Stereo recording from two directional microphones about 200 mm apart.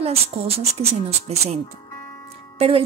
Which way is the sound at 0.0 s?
30° right (ahead or behind).